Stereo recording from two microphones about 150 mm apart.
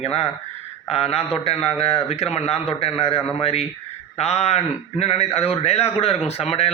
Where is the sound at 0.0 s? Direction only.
40° left (ahead or behind).